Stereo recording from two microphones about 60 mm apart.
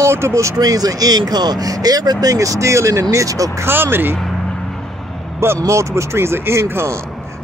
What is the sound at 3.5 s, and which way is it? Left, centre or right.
Speech, right.